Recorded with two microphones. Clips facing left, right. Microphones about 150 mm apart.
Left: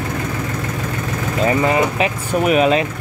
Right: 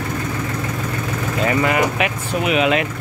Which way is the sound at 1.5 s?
25° left (ahead or behind).